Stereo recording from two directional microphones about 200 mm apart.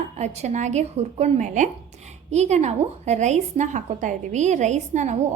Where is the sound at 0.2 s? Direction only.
35° right (ahead or behind).